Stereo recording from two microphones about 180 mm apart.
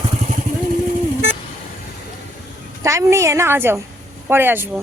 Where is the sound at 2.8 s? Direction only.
15° right (ahead or behind).